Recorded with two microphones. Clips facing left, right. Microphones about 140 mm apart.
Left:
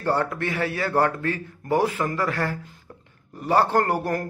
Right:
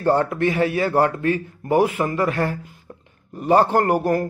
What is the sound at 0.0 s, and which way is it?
Speech, 15° right (ahead or behind).